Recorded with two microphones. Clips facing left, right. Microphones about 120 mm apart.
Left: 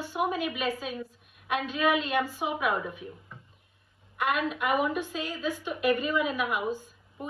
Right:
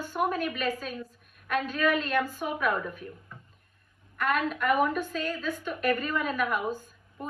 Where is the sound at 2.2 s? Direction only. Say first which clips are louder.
Left 1 dB; 50° right (ahead or behind).